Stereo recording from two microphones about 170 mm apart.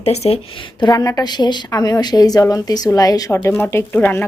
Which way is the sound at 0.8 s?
25° left (ahead or behind).